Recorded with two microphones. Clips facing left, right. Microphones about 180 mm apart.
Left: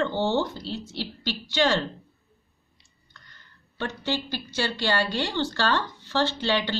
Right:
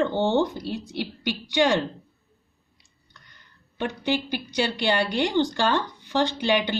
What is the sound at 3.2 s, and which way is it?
Speech, 15° right (ahead or behind).